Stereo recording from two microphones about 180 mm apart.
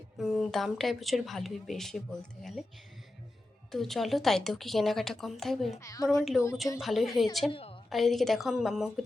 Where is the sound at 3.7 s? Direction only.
Centre (ahead or behind).